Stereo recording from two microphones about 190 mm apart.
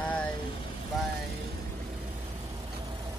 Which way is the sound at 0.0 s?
5° left (ahead or behind).